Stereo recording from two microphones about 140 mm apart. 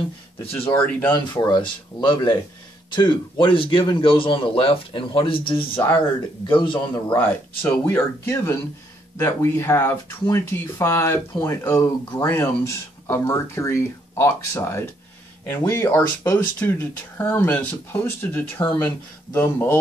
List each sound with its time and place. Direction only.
0.9 s speech: 15° left (ahead or behind)
1.3 s a man's voice: 35° left (ahead or behind)
7.2 s speech: 15° left (ahead or behind)
18.6 s a man's voice: 30° left (ahead or behind)
19.3 s speech: 15° left (ahead or behind)